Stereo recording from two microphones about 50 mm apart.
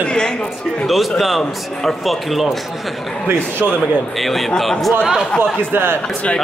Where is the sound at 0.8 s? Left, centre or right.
Centre.